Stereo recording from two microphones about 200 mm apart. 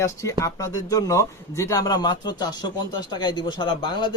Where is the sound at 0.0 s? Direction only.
15° left (ahead or behind).